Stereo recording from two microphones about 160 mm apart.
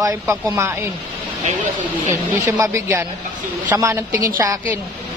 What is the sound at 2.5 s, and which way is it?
A woman's voice, 20° right (ahead or behind).